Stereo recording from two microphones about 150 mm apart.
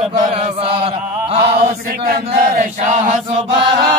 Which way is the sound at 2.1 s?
60° right (ahead or behind).